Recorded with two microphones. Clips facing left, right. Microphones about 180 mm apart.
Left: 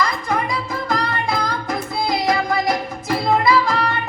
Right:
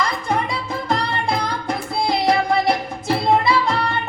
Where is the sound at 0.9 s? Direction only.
30° right (ahead or behind).